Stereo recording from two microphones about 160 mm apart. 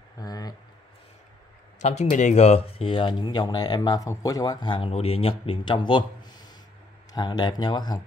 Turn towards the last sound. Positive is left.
turn(degrees=25)  # may be behind; listen again after turning